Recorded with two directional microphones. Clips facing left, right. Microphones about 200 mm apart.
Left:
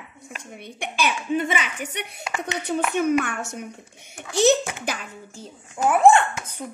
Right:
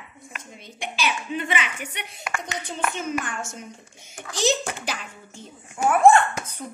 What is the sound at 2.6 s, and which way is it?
A woman's voice, 65° left (ahead or behind).